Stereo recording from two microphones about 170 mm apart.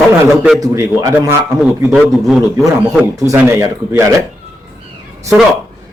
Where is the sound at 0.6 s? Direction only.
15° right (ahead or behind).